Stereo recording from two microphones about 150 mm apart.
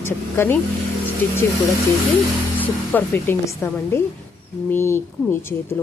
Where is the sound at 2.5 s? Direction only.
10° left (ahead or behind).